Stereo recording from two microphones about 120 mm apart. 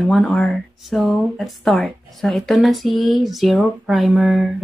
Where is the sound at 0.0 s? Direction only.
5° left (ahead or behind).